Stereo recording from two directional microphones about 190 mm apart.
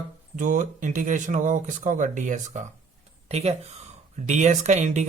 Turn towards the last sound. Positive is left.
turn(degrees=-35)  # may be behind; listen again after turning